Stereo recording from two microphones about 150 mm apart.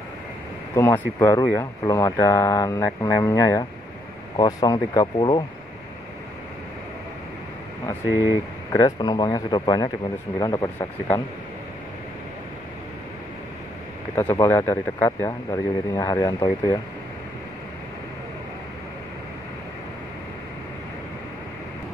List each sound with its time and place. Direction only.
0.7 s speech: 15° left (ahead or behind); by 5.4 s 30° left (ahead or behind)
8.0 s speech: 20° right (ahead or behind)
8.7 s speech: 25° left (ahead or behind)
14.1 s speech: 20° left (ahead or behind)